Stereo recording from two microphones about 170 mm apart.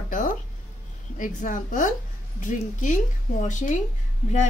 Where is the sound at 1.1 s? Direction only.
50° left (ahead or behind).